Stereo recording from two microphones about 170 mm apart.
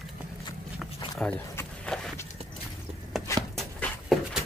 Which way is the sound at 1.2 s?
5° left (ahead or behind).